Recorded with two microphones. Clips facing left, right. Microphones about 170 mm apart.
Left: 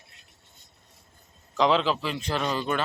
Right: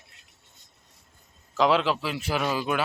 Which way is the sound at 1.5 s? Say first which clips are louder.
Even; centre (ahead or behind).